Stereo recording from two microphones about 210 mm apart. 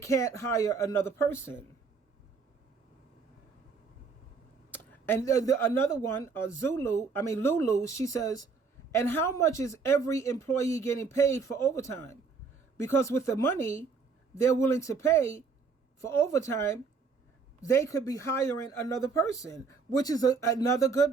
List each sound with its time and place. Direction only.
0.0 s speech: 15° left (ahead or behind)
4.7 s speech: 10° left (ahead or behind)